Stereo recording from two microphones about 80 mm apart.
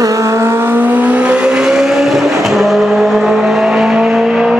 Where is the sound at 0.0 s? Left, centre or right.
Right.